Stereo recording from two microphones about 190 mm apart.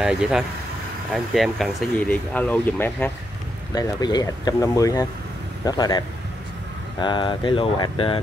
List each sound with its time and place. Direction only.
0.0 s speech: 5° right (ahead or behind)
3.7 s speech: 20° left (ahead or behind)